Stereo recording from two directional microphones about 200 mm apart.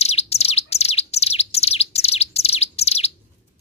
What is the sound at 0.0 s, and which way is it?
Bird, 30° left (ahead or behind).